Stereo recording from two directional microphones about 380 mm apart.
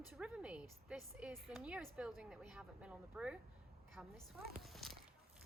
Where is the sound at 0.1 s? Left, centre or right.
Centre.